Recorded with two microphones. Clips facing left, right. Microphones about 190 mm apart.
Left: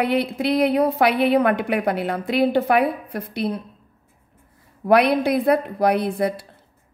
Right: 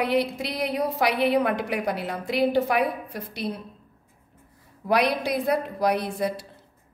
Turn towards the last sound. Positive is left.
turn(degrees=60)  # may be behind; listen again after turning